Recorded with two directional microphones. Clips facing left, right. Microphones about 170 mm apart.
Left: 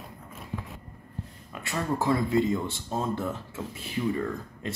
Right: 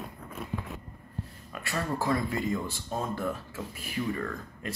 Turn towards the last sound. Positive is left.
turn(degrees=20)  # may be behind; listen again after turning